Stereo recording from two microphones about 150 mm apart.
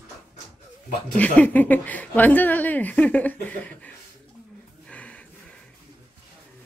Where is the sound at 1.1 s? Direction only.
10° left (ahead or behind).